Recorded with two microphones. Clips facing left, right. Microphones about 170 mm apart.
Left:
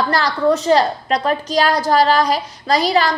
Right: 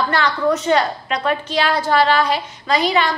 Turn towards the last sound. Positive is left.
turn(degrees=35)  # may be behind; listen again after turning